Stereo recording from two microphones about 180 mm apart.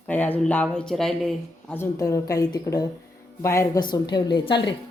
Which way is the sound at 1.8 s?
15° left (ahead or behind).